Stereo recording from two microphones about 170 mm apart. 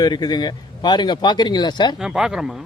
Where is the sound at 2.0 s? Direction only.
5° right (ahead or behind).